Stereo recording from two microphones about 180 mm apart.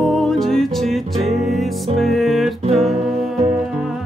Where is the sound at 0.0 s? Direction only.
Centre (ahead or behind).